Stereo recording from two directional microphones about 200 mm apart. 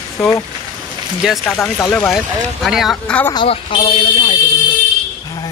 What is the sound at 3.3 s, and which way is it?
A woman's voice, 25° left (ahead or behind).